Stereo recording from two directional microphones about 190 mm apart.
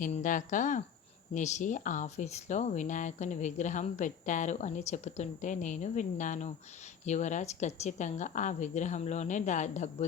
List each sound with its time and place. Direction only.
0.0 s speech: 45° left (ahead or behind)